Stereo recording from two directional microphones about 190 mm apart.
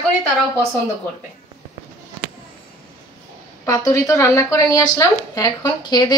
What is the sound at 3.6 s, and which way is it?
Speech, 20° left (ahead or behind).